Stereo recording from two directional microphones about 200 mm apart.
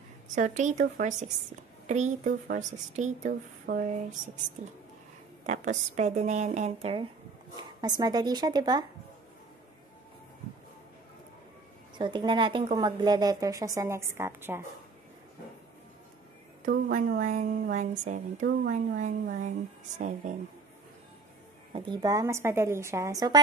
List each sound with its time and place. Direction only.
0.4 s a woman's voice: 40° right (ahead or behind)
5.5 s a woman's voice: 35° right (ahead or behind); by 8.8 s 20° right (ahead or behind)
12.0 s a woman's voice: 25° right (ahead or behind)
16.6 s a woman's voice: 40° right (ahead or behind)
21.7 s a woman's voice: 20° right (ahead or behind)